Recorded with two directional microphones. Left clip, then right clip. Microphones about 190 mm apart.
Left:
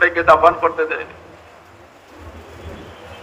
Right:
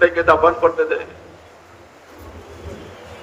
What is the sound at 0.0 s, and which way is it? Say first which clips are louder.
A man's voice: left 2 dB; 40° left (ahead or behind).